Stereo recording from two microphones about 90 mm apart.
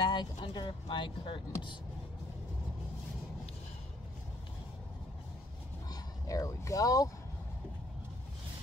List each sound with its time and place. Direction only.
0.1 s speech: 55° left (ahead or behind)
5.9 s speech: 40° left (ahead or behind)